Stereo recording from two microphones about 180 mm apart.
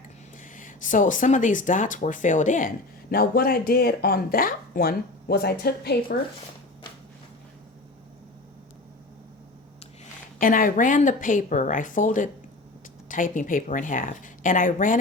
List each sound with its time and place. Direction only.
0.4 s speech: 45° left (ahead or behind)
10.4 s speech: 50° left (ahead or behind)